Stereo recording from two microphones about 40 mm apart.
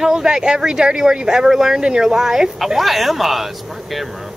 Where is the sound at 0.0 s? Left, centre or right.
Centre.